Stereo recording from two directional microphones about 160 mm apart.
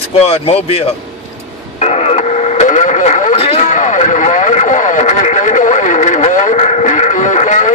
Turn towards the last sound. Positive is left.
turn(degrees=50)  # may be behind; listen again after turning